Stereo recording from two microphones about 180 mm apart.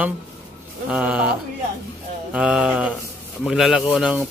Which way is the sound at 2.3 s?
5° right (ahead or behind).